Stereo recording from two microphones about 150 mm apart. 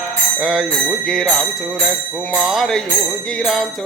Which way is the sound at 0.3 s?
Centre (ahead or behind).